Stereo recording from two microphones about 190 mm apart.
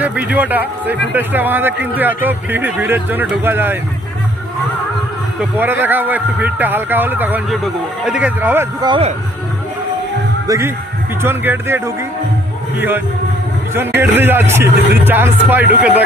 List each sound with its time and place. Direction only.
0.0 s a man's voice: 5° right (ahead or behind)
5.4 s a man's voice: 10° right (ahead or behind)
8.8 s speech: 25° right (ahead or behind)
10.4 s a man's voice: 15° right (ahead or behind)
13.7 s a man's voice: 10° right (ahead or behind)